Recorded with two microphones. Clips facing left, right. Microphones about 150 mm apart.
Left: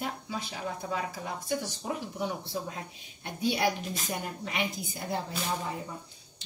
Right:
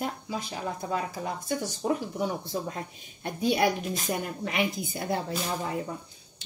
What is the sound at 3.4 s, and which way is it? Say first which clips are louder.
A woman's voice: right 3 dB; 50° right (ahead or behind).